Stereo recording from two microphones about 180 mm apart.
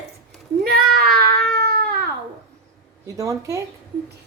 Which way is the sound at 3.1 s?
15° right (ahead or behind).